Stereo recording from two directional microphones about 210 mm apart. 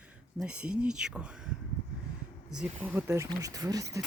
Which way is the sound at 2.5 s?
5° right (ahead or behind).